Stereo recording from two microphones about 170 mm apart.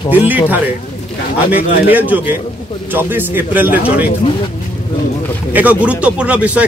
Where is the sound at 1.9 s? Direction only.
10° right (ahead or behind).